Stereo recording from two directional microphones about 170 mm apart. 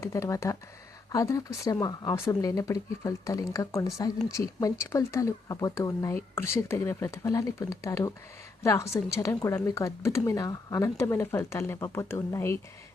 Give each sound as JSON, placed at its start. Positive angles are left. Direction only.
{"t": 0.0, "sound": "speech", "side_deg": 15}